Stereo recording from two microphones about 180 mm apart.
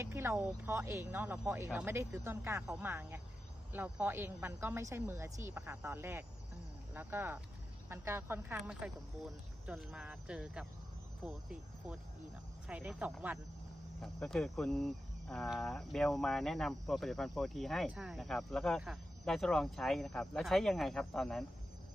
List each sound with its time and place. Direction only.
0.0 s speech: 15° right (ahead or behind); by 21.4 s centre (ahead or behind)